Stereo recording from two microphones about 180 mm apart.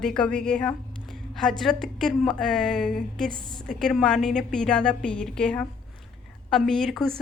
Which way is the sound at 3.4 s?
25° left (ahead or behind).